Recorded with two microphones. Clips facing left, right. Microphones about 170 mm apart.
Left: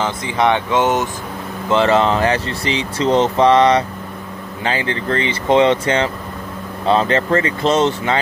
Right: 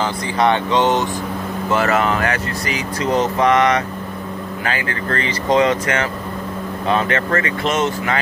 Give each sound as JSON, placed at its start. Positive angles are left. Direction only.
{"t": 0.0, "sound": "speech", "side_deg": 20}